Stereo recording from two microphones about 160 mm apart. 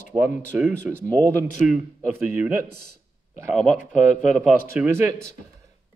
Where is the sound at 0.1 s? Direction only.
20° right (ahead or behind).